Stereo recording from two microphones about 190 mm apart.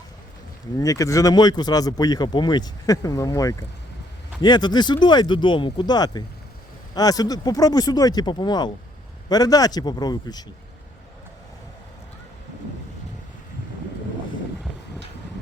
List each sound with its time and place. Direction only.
0.8 s speech: 15° left (ahead or behind)